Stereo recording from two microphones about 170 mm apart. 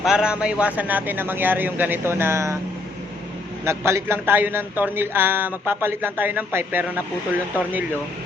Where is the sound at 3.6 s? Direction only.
15° right (ahead or behind).